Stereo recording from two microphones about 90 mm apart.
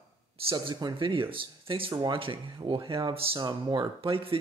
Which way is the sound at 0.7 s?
60° right (ahead or behind).